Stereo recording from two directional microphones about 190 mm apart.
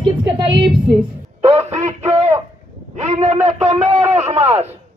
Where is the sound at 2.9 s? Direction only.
40° right (ahead or behind).